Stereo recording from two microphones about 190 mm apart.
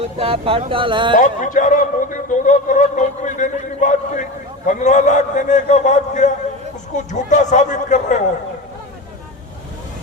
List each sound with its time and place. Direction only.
0.0 s speech: 30° right (ahead or behind)
1.2 s a man's voice: 40° left (ahead or behind)